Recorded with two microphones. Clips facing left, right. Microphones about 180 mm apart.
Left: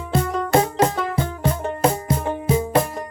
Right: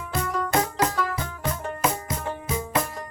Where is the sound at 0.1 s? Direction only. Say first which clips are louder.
Left 6 dB; 30° left (ahead or behind).